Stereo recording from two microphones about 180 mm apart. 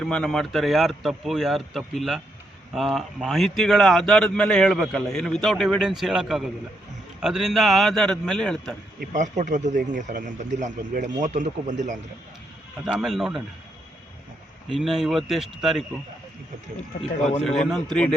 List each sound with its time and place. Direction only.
0.0 s a man's voice: 5° left (ahead or behind)
9.0 s a man's voice: 45° right (ahead or behind)
12.8 s a man's voice: centre (ahead or behind)
14.7 s a man's voice: centre (ahead or behind)
17.4 s a man's voice: centre (ahead or behind)